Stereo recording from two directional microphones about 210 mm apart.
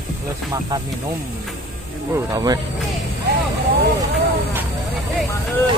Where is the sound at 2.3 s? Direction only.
20° right (ahead or behind).